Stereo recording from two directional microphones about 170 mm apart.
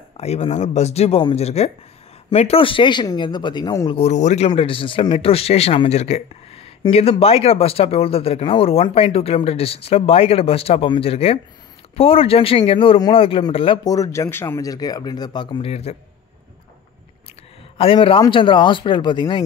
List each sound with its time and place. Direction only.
0.2 s speech: 40° left (ahead or behind)
4.0 s speech: 45° left (ahead or behind)
4.5 s speech: 30° left (ahead or behind)
13.8 s speech: 20° left (ahead or behind); by 16.0 s 40° left (ahead or behind)
17.7 s speech: 30° left (ahead or behind)